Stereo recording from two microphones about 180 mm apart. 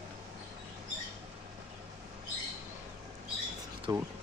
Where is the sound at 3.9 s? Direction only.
20° right (ahead or behind).